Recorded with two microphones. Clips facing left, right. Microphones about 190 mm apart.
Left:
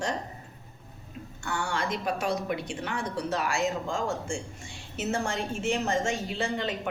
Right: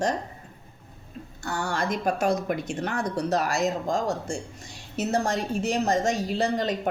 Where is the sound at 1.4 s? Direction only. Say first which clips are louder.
Right 3 dB; 40° right (ahead or behind).